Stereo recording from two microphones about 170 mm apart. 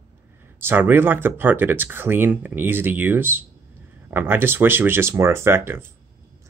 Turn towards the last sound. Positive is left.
turn(degrees=-15)  # may be behind; listen again after turning